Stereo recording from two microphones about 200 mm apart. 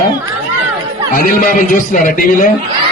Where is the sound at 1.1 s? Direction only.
45° left (ahead or behind).